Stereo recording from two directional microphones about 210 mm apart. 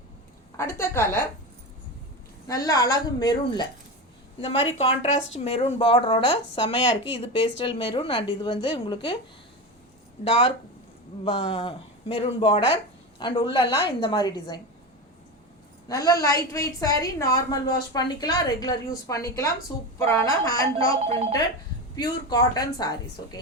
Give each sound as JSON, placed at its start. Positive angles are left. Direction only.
{"t": 0.5, "sound": "a woman's voice", "side_deg": 10}
{"t": 2.5, "sound": "a woman's voice", "side_deg": 15}
{"t": 10.2, "sound": "speech", "side_deg": 25}
{"t": 15.9, "sound": "a woman's voice", "side_deg": 15}
{"t": 21.0, "sound": "speech", "side_deg": -30}
{"t": 21.9, "sound": "speech", "side_deg": 20}